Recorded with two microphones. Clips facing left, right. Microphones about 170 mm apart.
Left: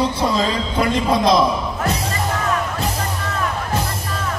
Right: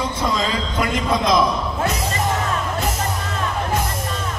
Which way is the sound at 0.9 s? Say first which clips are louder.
Left 3 dB; 30° left (ahead or behind).